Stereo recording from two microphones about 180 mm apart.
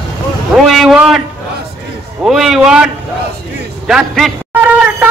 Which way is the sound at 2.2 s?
Centre (ahead or behind).